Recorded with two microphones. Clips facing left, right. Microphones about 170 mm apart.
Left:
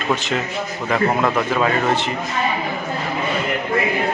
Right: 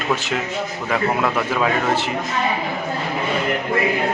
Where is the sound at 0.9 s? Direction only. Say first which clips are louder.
Left 2 dB; 5° right (ahead or behind).